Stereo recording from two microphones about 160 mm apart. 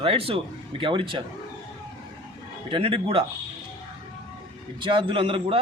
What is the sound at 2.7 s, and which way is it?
Speech, 35° right (ahead or behind).